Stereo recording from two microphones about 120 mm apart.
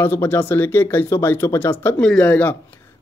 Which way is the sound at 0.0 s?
20° left (ahead or behind).